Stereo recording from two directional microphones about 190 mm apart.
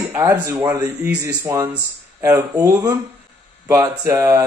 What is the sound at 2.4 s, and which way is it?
Speech, 20° right (ahead or behind).